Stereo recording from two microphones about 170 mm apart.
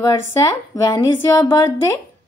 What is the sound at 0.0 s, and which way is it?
A woman's voice, 20° left (ahead or behind).